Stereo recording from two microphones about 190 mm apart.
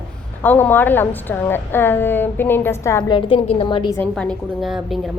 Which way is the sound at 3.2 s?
30° left (ahead or behind).